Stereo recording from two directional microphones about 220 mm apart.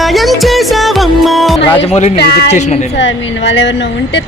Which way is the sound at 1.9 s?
30° left (ahead or behind).